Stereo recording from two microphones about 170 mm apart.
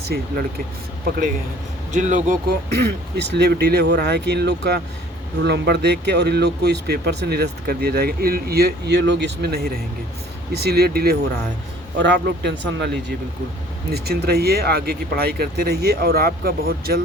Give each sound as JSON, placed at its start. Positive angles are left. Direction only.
{"t": 0.0, "sound": "speech", "side_deg": -70}
{"t": 1.9, "sound": "speech", "side_deg": -45}
{"t": 3.2, "sound": "speech", "side_deg": -80}
{"t": 11.9, "sound": "speech", "side_deg": -85}
{"t": 13.9, "sound": "speech", "side_deg": -70}